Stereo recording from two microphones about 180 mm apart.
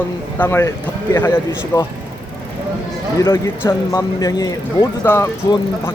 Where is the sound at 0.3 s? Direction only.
15° left (ahead or behind).